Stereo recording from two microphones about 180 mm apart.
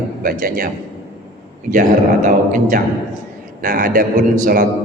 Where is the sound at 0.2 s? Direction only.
50° right (ahead or behind).